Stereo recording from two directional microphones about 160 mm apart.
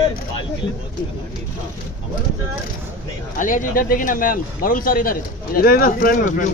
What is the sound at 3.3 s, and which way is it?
Speech, 55° left (ahead or behind).